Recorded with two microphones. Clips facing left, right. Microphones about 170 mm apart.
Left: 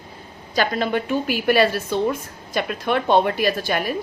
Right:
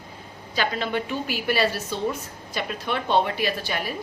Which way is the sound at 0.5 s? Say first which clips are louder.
Left 5 dB; 45° left (ahead or behind).